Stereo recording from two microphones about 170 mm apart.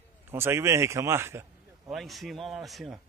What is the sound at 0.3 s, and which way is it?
Speech, 15° right (ahead or behind).